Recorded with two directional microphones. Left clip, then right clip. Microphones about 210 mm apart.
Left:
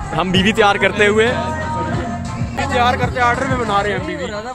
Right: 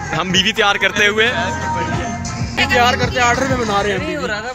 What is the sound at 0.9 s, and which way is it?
Speech, 10° left (ahead or behind).